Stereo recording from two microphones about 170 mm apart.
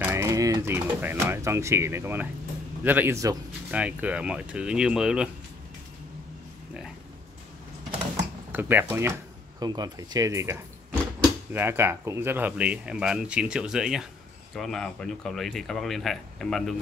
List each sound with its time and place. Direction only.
0.0 s speech: 15° right (ahead or behind)
8.5 s speech: 10° right (ahead or behind)